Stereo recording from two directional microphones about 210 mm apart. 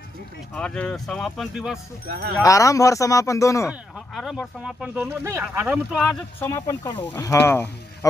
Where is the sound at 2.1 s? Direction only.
45° right (ahead or behind).